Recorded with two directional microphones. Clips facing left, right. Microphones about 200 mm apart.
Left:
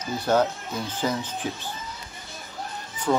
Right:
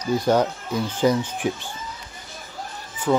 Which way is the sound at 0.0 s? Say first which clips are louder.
Right 3 dB; 10° right (ahead or behind).